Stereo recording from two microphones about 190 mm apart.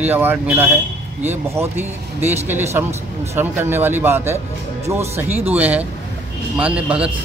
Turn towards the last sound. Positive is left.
turn(degrees=-5)  # may be behind; listen again after turning